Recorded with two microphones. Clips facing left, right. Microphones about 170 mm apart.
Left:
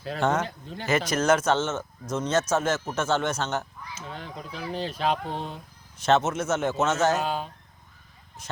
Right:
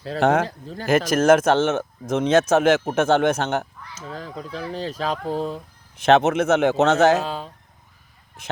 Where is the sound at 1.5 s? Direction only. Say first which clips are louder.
Right 7 dB; 65° right (ahead or behind).